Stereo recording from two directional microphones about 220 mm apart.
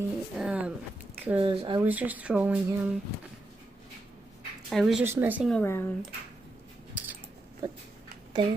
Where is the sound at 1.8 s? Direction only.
5° right (ahead or behind).